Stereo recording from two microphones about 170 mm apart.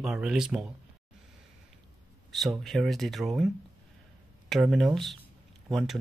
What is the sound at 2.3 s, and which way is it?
Speech, centre (ahead or behind).